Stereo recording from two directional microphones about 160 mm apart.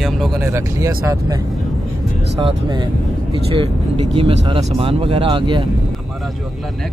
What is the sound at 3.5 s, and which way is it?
Speech, 40° right (ahead or behind).